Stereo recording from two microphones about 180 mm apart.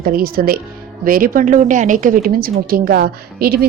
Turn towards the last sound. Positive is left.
turn(degrees=-60)  # may be behind; listen again after turning